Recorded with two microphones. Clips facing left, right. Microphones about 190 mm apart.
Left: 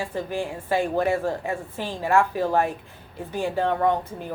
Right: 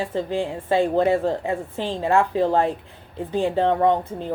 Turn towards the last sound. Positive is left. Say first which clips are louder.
# right 3 dB
turn(degrees=-25)  # may be behind; listen again after turning